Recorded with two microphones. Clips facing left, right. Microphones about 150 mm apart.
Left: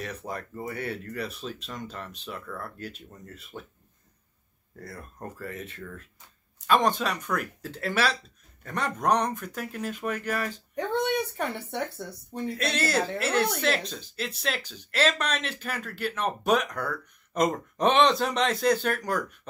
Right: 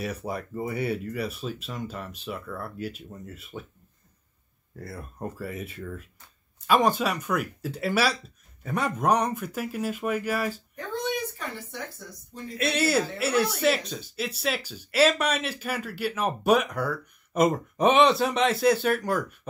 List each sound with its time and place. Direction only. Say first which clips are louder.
0.0 s speech: right 4 dB; 10° right (ahead or behind)
4.7 s speech: right 3 dB; 5° right (ahead or behind)
10.7 s a sound: left 4 dB; 70° left (ahead or behind)
11.3 s speech: left 6 dB; 65° left (ahead or behind)
12.5 s speech: right 4 dB; 5° right (ahead or behind)